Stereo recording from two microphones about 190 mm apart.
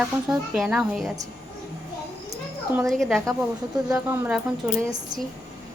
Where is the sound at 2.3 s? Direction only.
15° right (ahead or behind).